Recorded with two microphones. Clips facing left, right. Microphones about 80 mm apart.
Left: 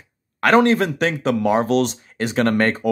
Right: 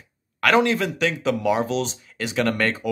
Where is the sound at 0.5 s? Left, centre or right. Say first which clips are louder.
Left 6 dB; left.